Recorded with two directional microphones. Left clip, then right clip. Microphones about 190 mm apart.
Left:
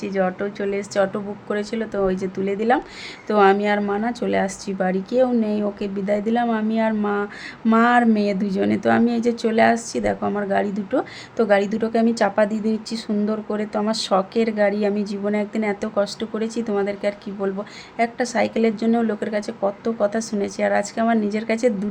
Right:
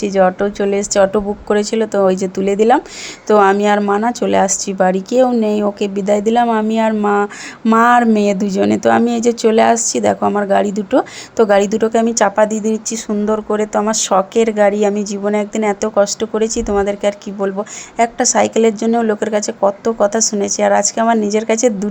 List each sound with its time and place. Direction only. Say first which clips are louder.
0.0 s a woman's voice: right 10 dB; 25° right (ahead or behind)